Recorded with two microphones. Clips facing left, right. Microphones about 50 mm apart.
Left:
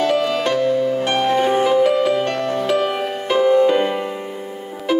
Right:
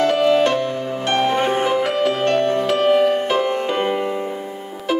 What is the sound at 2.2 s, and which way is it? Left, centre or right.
Music, right.